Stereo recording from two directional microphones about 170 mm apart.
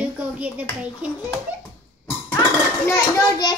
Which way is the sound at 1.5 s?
10° right (ahead or behind).